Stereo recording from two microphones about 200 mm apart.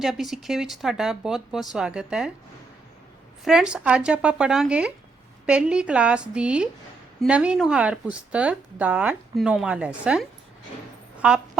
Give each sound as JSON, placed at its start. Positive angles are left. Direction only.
{"t": 0.0, "sound": "speech", "side_deg": 0}
{"t": 3.4, "sound": "speech", "side_deg": -5}